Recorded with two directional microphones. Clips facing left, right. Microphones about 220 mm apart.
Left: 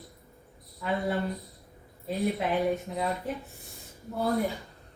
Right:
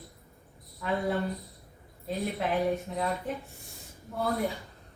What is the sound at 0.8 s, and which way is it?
A man's voice, centre (ahead or behind).